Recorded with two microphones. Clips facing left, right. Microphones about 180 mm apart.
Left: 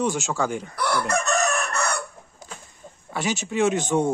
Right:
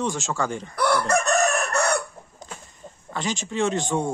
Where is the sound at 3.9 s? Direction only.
20° left (ahead or behind).